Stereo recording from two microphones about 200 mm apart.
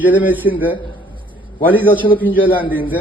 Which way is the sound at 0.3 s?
10° right (ahead or behind).